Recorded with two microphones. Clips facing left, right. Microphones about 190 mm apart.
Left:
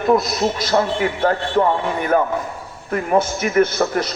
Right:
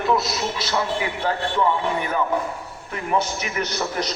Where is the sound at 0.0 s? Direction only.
50° left (ahead or behind).